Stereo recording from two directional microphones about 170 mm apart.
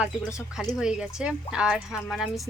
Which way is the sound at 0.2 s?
15° left (ahead or behind).